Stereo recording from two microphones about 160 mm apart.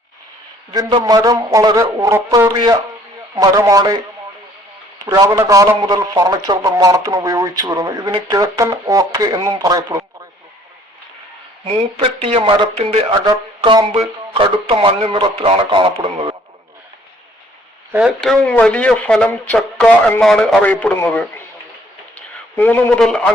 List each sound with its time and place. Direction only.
0.7 s a man's voice: 25° right (ahead or behind)
11.6 s speech: 40° right (ahead or behind)
17.9 s speech: centre (ahead or behind)
22.5 s speech: 10° left (ahead or behind)